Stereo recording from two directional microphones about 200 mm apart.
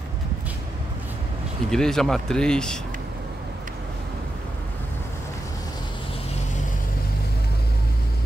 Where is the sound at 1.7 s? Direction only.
Centre (ahead or behind).